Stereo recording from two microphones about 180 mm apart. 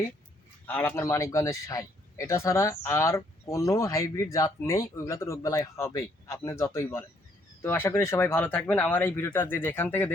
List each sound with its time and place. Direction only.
0.7 s speech: 10° left (ahead or behind)